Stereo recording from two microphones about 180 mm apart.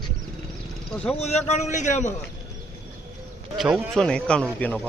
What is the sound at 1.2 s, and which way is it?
Speech, 35° left (ahead or behind).